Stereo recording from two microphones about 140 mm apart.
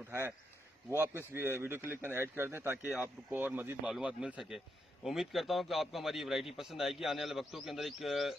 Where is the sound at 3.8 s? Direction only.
5° right (ahead or behind).